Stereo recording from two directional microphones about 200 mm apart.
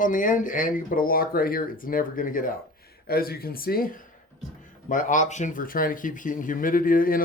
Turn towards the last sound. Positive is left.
turn(degrees=45)  # may be behind; listen again after turning